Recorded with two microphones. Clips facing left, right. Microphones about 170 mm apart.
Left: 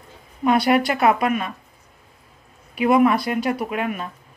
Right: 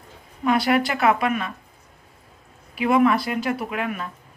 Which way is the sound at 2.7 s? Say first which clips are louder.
Left 2 dB; 20° left (ahead or behind).